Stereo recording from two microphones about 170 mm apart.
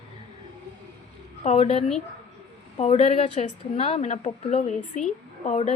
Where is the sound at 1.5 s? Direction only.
35° left (ahead or behind).